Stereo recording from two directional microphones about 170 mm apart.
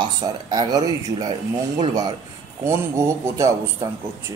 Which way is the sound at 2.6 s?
15° right (ahead or behind).